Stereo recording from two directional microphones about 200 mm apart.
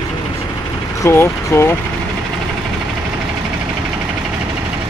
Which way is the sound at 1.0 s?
10° left (ahead or behind).